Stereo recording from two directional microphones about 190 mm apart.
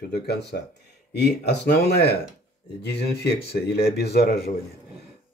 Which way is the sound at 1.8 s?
60° left (ahead or behind).